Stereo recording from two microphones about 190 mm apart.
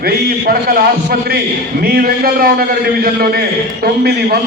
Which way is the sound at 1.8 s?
50° right (ahead or behind).